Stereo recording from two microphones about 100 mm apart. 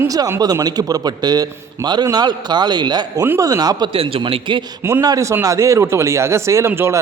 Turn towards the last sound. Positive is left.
turn(degrees=-25)  # may be behind; listen again after turning